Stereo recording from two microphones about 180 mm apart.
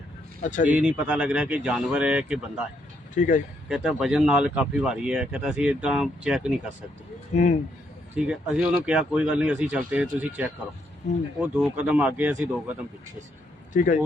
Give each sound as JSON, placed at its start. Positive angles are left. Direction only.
{"t": 0.4, "sound": "speech", "side_deg": 45}
{"t": 0.7, "sound": "speech", "side_deg": -5}
{"t": 3.2, "sound": "speech", "side_deg": 45}
{"t": 3.7, "sound": "speech", "side_deg": -5}
{"t": 7.3, "sound": "speech", "side_deg": 40}
{"t": 8.1, "sound": "speech", "side_deg": -5}
{"t": 13.7, "sound": "speech", "side_deg": 45}